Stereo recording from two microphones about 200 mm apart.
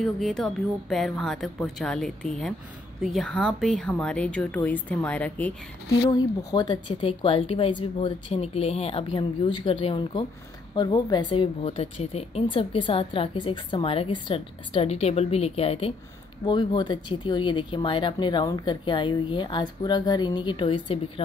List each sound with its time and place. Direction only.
0.0 s a woman's voice: centre (ahead or behind)
6.0 s speech: 20° left (ahead or behind)